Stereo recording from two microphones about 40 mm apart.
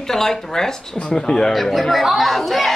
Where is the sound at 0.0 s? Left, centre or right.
Centre.